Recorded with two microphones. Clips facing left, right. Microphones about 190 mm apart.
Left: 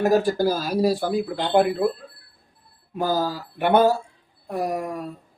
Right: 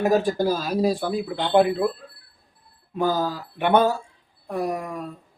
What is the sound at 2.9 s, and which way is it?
Speech, 5° left (ahead or behind).